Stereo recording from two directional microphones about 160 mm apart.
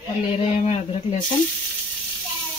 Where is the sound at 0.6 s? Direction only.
45° left (ahead or behind).